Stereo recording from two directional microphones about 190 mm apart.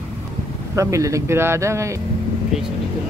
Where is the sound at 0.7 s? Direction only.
15° right (ahead or behind).